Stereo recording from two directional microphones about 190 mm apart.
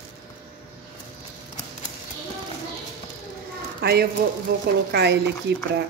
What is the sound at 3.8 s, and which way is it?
Speech, 55° right (ahead or behind).